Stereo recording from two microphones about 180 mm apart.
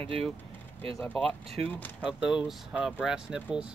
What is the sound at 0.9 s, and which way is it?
Speech, 15° left (ahead or behind).